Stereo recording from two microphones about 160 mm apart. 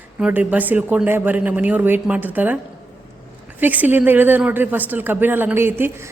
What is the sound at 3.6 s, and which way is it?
A woman's voice, 10° right (ahead or behind).